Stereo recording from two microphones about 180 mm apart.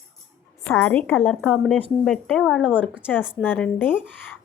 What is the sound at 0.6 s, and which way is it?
A woman's voice, 5° left (ahead or behind).